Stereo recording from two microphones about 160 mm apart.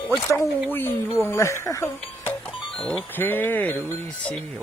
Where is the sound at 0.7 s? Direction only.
15° left (ahead or behind).